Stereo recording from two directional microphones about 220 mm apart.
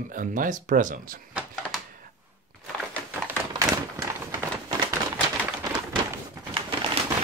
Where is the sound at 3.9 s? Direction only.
15° right (ahead or behind).